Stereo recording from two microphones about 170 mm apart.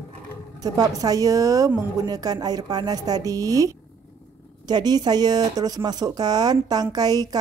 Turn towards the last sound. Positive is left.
turn(degrees=-25)  # may be behind; listen again after turning